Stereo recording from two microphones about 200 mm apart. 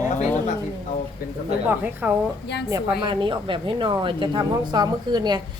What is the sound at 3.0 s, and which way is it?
Speech, 25° right (ahead or behind).